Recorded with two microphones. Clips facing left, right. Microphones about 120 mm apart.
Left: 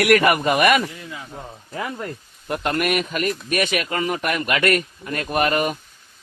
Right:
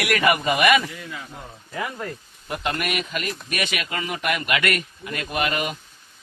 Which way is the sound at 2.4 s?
50° left (ahead or behind).